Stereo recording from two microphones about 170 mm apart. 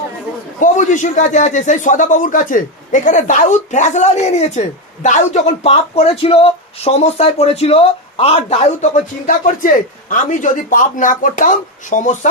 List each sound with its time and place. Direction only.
0.6 s speech: 50° left (ahead or behind)